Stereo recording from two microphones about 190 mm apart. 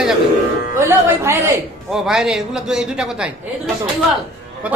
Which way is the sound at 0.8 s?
15° right (ahead or behind).